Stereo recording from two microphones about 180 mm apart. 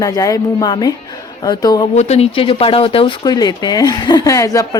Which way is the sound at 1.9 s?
35° left (ahead or behind).